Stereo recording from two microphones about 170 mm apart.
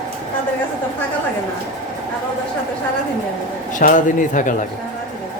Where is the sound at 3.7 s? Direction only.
50° left (ahead or behind).